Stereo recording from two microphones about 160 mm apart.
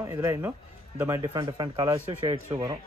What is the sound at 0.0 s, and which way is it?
A man's voice, 15° right (ahead or behind).